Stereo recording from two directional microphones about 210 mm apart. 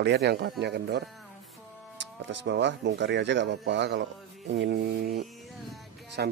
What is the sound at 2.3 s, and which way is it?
Speech, 55° right (ahead or behind).